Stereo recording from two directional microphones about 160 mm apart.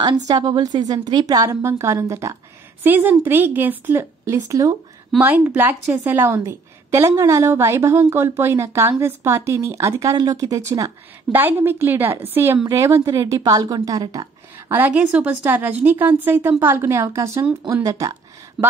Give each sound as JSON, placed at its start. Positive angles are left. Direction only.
{"t": 0.3, "sound": "a woman's voice", "side_deg": -25}
{"t": 5.2, "sound": "a woman's voice", "side_deg": -10}
{"t": 14.7, "sound": "a woman's voice", "side_deg": -10}
{"t": 18.6, "sound": "a sound", "side_deg": 0}